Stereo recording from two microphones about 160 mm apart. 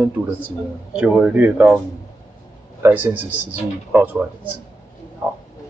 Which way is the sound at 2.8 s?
10° right (ahead or behind).